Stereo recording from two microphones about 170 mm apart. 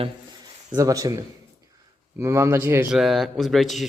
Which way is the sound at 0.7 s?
20° right (ahead or behind).